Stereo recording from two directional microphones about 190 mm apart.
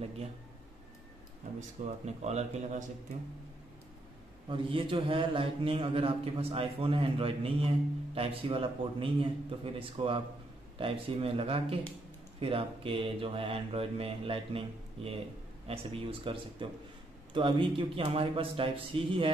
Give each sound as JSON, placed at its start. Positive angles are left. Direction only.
{"t": 1.9, "sound": "speech", "side_deg": -35}
{"t": 4.5, "sound": "a man's voice", "side_deg": -25}
{"t": 15.6, "sound": "a man's voice", "side_deg": -30}